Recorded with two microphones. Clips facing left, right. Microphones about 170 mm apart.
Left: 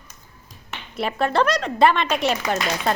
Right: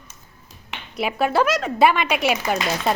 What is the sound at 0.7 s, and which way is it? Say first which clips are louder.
A woman's voice: right 1 dB; 5° right (ahead or behind).